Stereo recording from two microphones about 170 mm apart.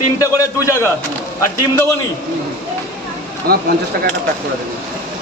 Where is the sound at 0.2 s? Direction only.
20° left (ahead or behind).